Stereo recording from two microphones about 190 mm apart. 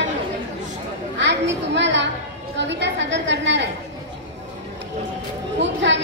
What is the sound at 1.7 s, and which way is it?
A woman's voice, 70° right (ahead or behind).